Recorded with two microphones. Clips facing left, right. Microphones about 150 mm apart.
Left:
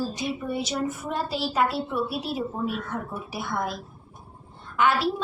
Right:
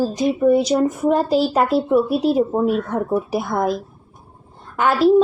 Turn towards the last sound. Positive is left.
turn(degrees=-45)  # may be behind; listen again after turning